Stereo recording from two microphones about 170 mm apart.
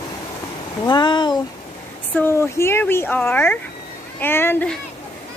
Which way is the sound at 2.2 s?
15° left (ahead or behind).